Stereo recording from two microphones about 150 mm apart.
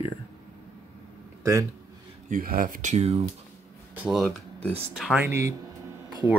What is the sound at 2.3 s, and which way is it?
Speech, 70° right (ahead or behind).